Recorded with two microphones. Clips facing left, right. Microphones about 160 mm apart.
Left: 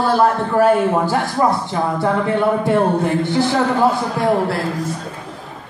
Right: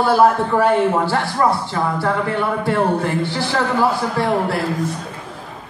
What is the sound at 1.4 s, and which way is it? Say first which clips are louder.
Speech: even; 20° left (ahead or behind).